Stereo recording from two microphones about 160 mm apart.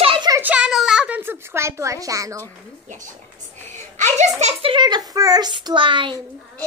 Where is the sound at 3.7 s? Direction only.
45° right (ahead or behind); by 6.1 s 30° right (ahead or behind).